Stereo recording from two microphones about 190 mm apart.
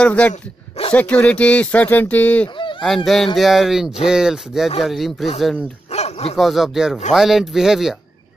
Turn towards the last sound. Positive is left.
turn(degrees=0)  # may be behind; listen again after turning